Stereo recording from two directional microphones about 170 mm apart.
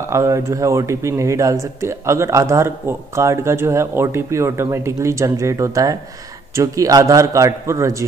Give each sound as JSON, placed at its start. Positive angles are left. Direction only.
{"t": 0.1, "sound": "a man's voice", "side_deg": -15}